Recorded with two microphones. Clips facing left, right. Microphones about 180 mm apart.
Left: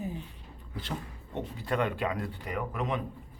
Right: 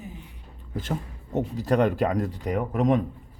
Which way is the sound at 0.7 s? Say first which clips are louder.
Right 7 dB; 45° right (ahead or behind).